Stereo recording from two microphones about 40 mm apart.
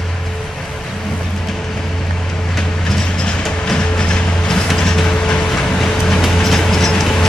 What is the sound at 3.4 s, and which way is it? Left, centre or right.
Music, centre.